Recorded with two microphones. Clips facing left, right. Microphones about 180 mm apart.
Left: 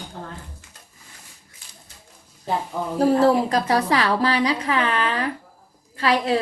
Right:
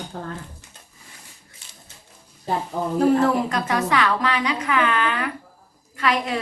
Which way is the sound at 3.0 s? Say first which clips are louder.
Left 1 dB; 35° left (ahead or behind).